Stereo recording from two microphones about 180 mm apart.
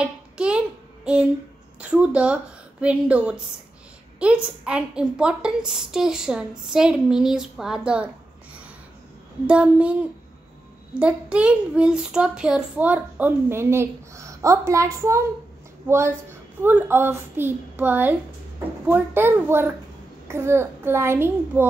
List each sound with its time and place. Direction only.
0.0 s child singing: 5° right (ahead or behind)
1.8 s a child's voice: 5° right (ahead or behind)
9.5 s a child's voice: 5° right (ahead or behind)
16.6 s a child's voice: 10° right (ahead or behind)